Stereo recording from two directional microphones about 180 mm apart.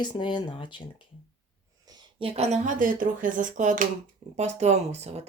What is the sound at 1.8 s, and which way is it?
Speech, 30° right (ahead or behind).